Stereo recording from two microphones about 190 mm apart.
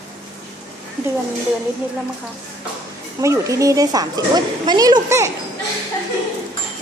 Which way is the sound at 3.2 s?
15° right (ahead or behind).